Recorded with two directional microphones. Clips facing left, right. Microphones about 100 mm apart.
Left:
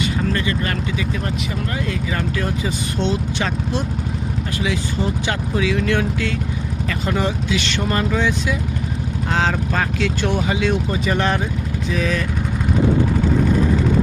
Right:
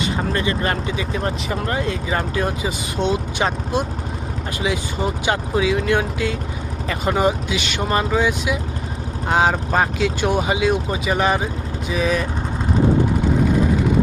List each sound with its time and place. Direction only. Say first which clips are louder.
0.3 s speech: right 1 dB; 25° right (ahead or behind)
2.6 s speech: even; 10° right (ahead or behind)